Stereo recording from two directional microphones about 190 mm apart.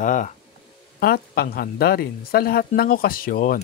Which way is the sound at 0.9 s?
55° left (ahead or behind).